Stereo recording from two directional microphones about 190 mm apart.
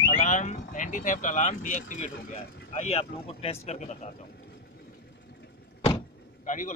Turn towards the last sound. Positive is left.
turn(degrees=45)  # may be behind; listen again after turning